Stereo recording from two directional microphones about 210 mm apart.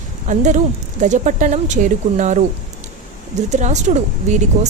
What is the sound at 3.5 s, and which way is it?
Speech, 35° right (ahead or behind).